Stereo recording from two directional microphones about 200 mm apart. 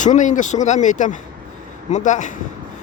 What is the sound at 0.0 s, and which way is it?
Speech, 40° left (ahead or behind).